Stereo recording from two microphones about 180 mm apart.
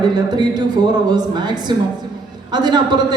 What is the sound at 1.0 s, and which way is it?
A man's voice, 25° right (ahead or behind).